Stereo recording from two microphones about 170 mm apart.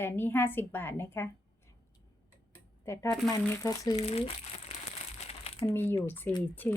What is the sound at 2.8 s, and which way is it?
Speech, 15° left (ahead or behind).